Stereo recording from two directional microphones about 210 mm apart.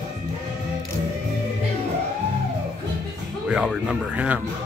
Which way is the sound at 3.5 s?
5° right (ahead or behind).